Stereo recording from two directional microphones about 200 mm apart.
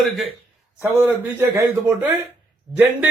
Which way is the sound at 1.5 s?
10° right (ahead or behind).